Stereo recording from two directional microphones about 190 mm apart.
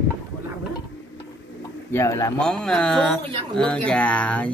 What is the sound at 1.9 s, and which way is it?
Speech, 15° left (ahead or behind).